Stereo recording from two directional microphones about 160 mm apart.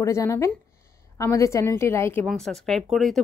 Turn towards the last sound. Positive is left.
turn(degrees=0)  # may be behind; listen again after turning